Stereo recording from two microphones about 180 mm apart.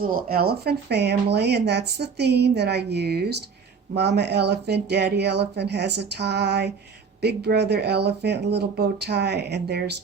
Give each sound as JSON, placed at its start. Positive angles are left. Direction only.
{"t": 0.0, "sound": "speech", "side_deg": -55}